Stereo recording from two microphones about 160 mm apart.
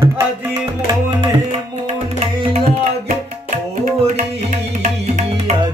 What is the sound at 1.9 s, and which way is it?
Tabla, 40° right (ahead or behind).